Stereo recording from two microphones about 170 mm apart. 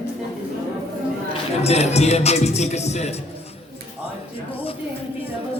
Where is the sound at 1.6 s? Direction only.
40° left (ahead or behind).